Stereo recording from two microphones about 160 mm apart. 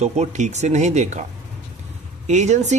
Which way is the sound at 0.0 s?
45° right (ahead or behind).